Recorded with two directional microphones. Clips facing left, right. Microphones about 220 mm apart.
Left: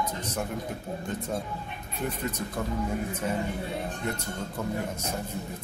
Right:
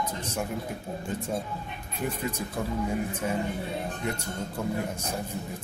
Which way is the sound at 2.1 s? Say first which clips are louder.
Right 1 dB; 10° right (ahead or behind).